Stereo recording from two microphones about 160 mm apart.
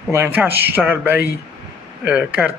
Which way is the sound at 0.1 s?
10° right (ahead or behind).